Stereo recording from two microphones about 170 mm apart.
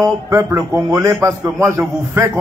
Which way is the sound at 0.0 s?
15° right (ahead or behind).